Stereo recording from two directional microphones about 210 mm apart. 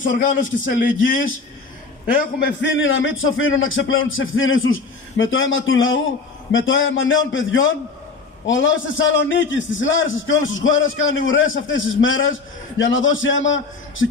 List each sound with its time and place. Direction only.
0.1 s a man's voice: 40° left (ahead or behind)
2.4 s a man's voice: 65° left (ahead or behind)